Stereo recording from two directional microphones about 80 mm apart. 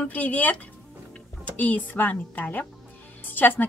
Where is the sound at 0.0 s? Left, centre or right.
Centre.